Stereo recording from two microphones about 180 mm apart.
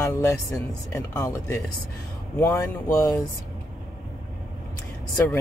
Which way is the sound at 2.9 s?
20° left (ahead or behind).